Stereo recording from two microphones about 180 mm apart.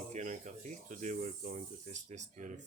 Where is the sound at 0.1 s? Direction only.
40° right (ahead or behind).